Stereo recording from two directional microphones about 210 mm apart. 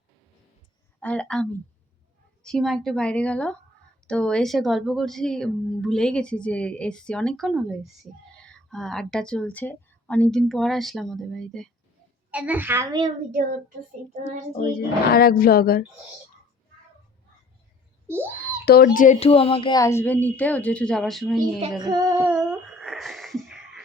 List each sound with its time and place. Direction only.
0.9 s a woman's voice: 5° left (ahead or behind); by 13.1 s 15° right (ahead or behind)
14.5 s speech: 40° left (ahead or behind)
18.1 s a child's voice: 10° right (ahead or behind)
18.6 s speech: 50° left (ahead or behind)
18.9 s speech: 30° left (ahead or behind); by 21.3 s centre (ahead or behind)
21.8 s humming: 20° right (ahead or behind); by 23.8 s centre (ahead or behind)